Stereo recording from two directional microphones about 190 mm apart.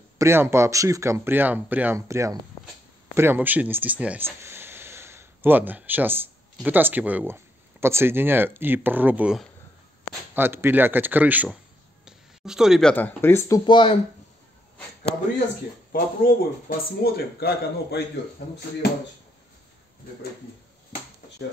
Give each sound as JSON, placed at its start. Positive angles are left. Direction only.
{"t": 0.2, "sound": "speech", "side_deg": -15}
{"t": 12.0, "sound": "a sound", "side_deg": -5}
{"t": 12.9, "sound": "speech", "side_deg": 10}
{"t": 15.9, "sound": "speech", "side_deg": 50}